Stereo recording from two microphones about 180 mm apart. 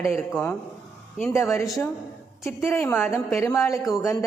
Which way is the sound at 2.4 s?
15° left (ahead or behind).